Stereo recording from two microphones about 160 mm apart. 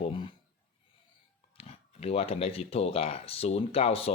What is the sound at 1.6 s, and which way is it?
Speech, 40° left (ahead or behind).